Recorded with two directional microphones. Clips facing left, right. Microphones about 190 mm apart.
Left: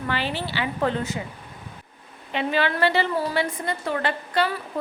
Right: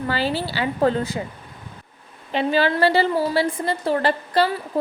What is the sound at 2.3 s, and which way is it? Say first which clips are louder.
A woman's voice: right 4 dB; 35° right (ahead or behind).